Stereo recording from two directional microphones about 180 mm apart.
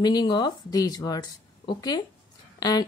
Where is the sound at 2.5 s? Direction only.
20° left (ahead or behind).